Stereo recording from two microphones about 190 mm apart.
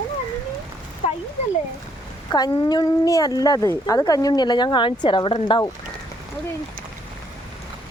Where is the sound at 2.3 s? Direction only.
20° left (ahead or behind).